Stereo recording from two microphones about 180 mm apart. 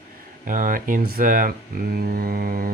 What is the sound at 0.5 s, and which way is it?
Speech, 50° right (ahead or behind).